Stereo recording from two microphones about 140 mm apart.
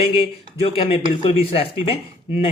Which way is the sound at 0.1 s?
40° left (ahead or behind).